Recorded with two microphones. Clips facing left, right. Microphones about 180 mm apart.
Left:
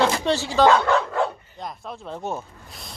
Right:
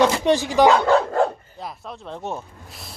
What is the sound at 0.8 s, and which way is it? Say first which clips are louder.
Dog: right 4 dB; 35° right (ahead or behind).